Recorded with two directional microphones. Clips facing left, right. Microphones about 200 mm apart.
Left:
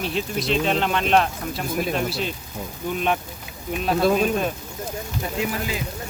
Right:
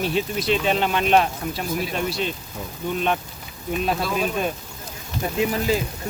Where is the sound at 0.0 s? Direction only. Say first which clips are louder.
Right 2 dB; centre (ahead or behind).